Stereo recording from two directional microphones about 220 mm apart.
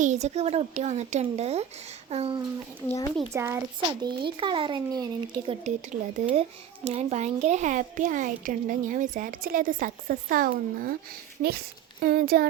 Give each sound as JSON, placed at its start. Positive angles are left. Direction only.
{"t": 0.0, "sound": "speech", "side_deg": -30}
{"t": 3.3, "sound": "a child's voice", "side_deg": -10}
{"t": 3.8, "sound": "speech", "side_deg": -20}
{"t": 5.6, "sound": "speech", "side_deg": -35}